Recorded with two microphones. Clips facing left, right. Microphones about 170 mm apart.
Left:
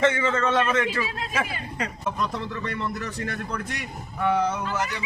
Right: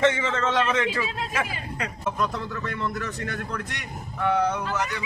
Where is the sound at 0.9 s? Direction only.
Centre (ahead or behind).